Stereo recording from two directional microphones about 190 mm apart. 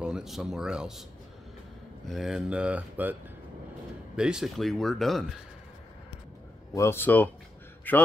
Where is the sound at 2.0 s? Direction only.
Centre (ahead or behind).